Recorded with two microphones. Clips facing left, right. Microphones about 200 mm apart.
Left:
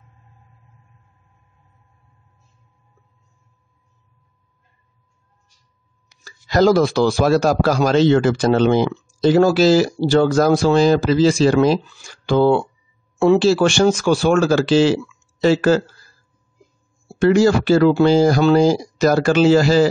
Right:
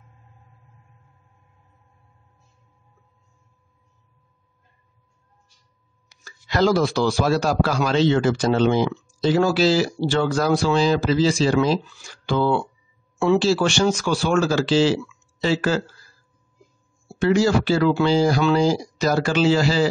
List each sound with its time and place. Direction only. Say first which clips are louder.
6.2 s a man's voice: left 5 dB; 40° left (ahead or behind); by 11.8 s 60° left (ahead or behind)
12.3 s a man's voice: left 6 dB; 45° left (ahead or behind)
17.2 s a man's voice: left 4 dB; 50° left (ahead or behind)